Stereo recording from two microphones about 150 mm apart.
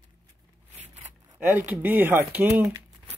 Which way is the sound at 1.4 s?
10° right (ahead or behind).